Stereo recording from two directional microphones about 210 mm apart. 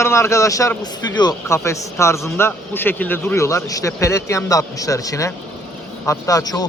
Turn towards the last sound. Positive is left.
turn(degrees=20)  # may be behind; listen again after turning